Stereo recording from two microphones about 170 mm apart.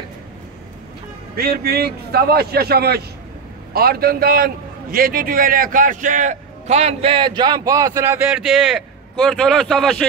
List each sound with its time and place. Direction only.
1.3 s a man's voice: 65° right (ahead or behind); by 10.0 s centre (ahead or behind)